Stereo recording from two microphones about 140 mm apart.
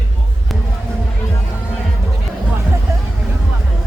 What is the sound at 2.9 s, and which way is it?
Music, 20° right (ahead or behind).